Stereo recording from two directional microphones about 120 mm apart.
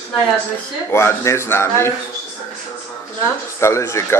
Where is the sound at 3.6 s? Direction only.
25° left (ahead or behind).